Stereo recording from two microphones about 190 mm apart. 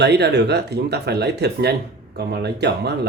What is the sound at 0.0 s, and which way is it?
Speech, 60° right (ahead or behind).